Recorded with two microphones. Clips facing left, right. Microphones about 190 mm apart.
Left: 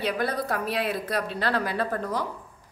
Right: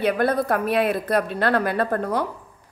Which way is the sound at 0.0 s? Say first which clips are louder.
Right 7 dB; 55° right (ahead or behind).